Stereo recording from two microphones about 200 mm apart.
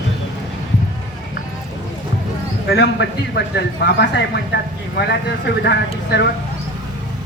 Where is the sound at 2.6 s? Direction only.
60° left (ahead or behind).